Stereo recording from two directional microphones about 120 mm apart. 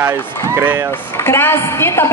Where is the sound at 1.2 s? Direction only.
20° left (ahead or behind).